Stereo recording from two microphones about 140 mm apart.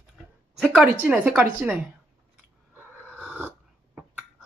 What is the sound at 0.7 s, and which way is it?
Speech, 10° right (ahead or behind).